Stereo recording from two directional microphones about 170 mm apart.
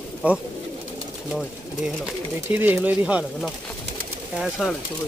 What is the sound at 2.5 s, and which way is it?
Speech, 10° right (ahead or behind).